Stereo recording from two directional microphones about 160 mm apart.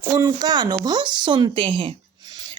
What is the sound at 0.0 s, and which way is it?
Speech, 20° right (ahead or behind).